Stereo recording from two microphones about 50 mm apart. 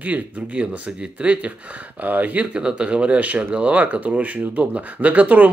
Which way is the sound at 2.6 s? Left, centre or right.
Right.